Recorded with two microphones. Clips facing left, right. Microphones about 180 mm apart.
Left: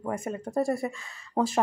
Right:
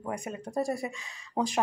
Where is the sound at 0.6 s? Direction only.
Centre (ahead or behind).